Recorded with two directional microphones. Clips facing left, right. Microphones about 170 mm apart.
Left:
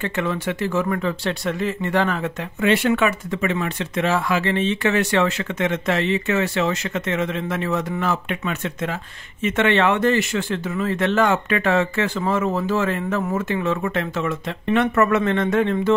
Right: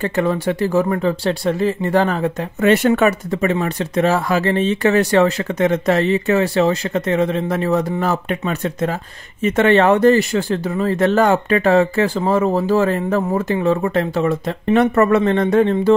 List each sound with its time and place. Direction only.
0.0 s speech: 35° right (ahead or behind)